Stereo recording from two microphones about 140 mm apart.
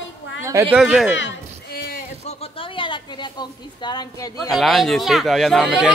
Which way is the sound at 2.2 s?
40° left (ahead or behind).